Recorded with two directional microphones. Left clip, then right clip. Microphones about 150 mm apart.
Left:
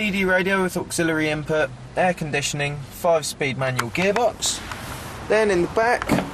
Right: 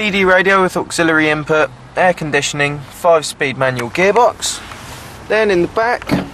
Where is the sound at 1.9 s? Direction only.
5° left (ahead or behind).